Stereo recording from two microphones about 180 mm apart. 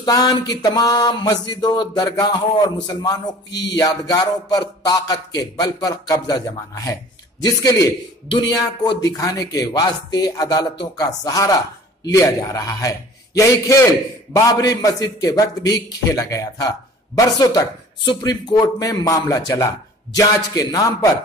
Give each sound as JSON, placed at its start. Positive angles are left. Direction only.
{"t": 0.0, "sound": "a man's voice", "side_deg": 20}